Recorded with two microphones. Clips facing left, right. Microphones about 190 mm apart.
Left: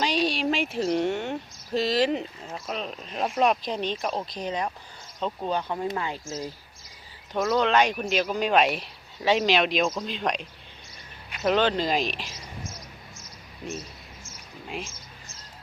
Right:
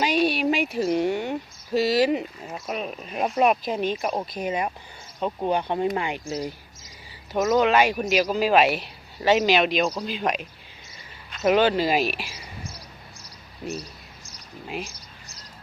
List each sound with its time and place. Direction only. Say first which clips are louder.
0.0 s a sound: right 3 dB; 10° right (ahead or behind)
3.2 s speech: right 2 dB; 10° right (ahead or behind)
7.5 s a man's voice: right 3 dB; 5° right (ahead or behind)
11.4 s speech: right 3 dB; 10° right (ahead or behind)
13.2 s cricket: right 3 dB; 35° right (ahead or behind)
14.8 s mouse: even; 35° right (ahead or behind)